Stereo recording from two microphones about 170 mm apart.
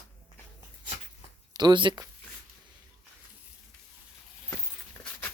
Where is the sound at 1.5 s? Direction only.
25° right (ahead or behind).